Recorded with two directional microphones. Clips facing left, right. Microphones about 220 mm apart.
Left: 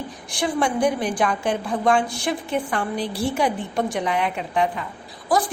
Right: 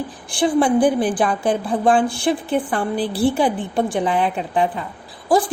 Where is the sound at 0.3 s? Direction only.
30° right (ahead or behind).